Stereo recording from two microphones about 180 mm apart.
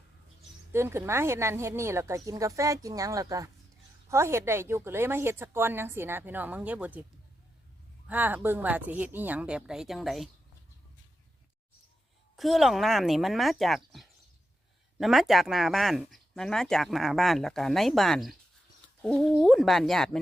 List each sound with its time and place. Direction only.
0.7 s a woman's voice: 15° right (ahead or behind)
8.0 s a woman's voice: 10° right (ahead or behind)
12.4 s speech: centre (ahead or behind)